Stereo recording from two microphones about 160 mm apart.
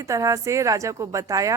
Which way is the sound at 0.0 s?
20° right (ahead or behind).